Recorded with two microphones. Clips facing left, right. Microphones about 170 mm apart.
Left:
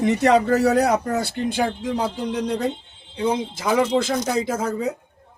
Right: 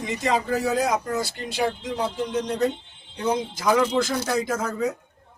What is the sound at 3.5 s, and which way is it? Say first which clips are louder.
Speech: even; 25° left (ahead or behind).